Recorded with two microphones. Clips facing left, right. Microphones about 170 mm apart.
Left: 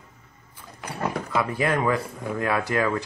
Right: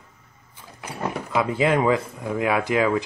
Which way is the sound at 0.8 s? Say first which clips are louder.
Even; 10° right (ahead or behind).